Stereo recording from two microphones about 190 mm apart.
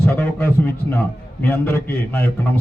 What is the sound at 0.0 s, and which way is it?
A man's voice, 10° left (ahead or behind).